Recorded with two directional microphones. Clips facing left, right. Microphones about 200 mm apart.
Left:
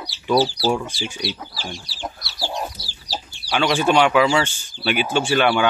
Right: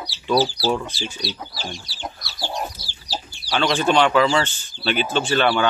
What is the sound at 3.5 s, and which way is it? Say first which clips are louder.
Speech: left 1 dB; 10° left (ahead or behind).